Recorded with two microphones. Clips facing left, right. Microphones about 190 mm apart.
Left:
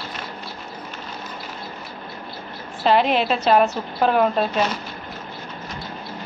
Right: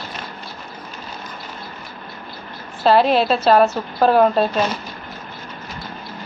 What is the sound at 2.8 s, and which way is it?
A woman's voice, 40° right (ahead or behind).